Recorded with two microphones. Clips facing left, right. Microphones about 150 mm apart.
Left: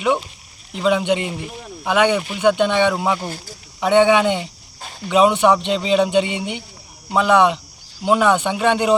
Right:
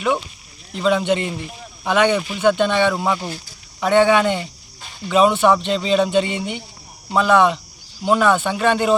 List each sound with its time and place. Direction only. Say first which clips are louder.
0.7 s speech: even; 15° left (ahead or behind)
3.2 s speech: even; 45° left (ahead or behind)
3.8 s speech: left 1 dB; 15° left (ahead or behind)